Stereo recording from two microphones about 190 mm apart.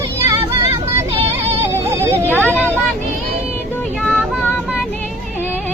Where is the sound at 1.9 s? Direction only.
15° right (ahead or behind).